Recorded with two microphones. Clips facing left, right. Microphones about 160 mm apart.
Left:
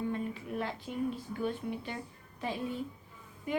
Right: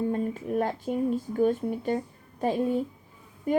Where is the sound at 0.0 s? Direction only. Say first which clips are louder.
Right 7 dB; 45° right (ahead or behind).